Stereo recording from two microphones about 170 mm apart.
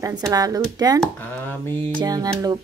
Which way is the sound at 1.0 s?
10° left (ahead or behind).